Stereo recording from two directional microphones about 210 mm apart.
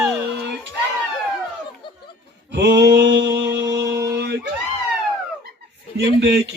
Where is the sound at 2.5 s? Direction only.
55° right (ahead or behind).